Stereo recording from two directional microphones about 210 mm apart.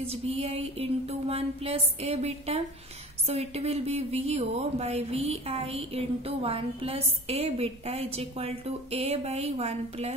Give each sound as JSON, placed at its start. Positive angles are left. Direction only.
{"t": 0.0, "sound": "a woman's voice", "side_deg": -30}